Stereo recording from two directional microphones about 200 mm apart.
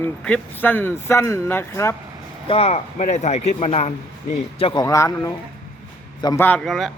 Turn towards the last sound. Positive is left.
turn(degrees=0)  # may be behind; listen again after turning